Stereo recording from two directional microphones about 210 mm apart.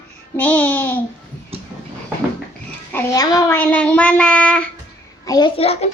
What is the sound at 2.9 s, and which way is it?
Speech, 15° left (ahead or behind).